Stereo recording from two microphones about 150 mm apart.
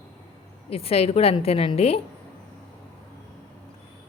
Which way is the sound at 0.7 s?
40° left (ahead or behind).